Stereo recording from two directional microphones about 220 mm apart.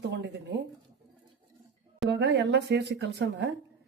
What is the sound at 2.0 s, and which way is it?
Speech, 50° right (ahead or behind).